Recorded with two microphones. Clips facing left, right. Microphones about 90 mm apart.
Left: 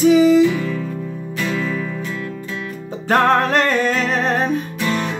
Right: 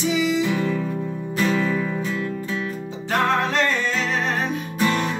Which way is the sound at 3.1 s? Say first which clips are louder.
Left 6 dB; 50° left (ahead or behind).